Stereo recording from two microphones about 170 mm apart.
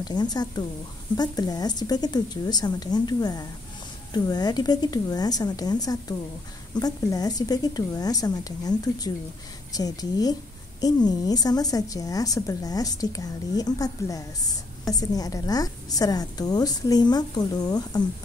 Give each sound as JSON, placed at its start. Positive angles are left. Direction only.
{"t": 0.0, "sound": "a woman's voice", "side_deg": 25}